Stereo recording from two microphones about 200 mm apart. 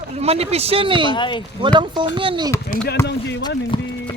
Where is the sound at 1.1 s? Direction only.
25° left (ahead or behind).